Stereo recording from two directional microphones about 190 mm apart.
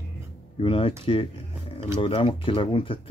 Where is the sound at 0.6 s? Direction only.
30° left (ahead or behind).